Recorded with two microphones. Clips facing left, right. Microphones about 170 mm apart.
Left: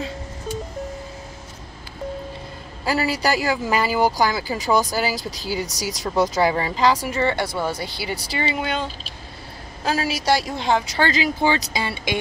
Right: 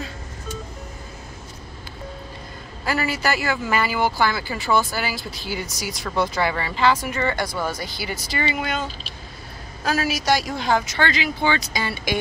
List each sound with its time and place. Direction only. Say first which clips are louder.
2.9 s speech: left 2 dB; 35° left (ahead or behind)
9.8 s speech: even; 25° left (ahead or behind)